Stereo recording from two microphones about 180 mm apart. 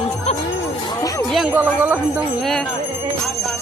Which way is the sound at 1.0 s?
20° left (ahead or behind).